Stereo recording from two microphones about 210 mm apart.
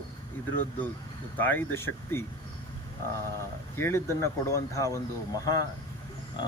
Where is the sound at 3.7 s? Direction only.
10° left (ahead or behind).